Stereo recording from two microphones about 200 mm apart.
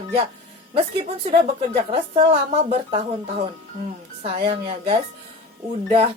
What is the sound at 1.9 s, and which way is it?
A woman's voice, 30° right (ahead or behind).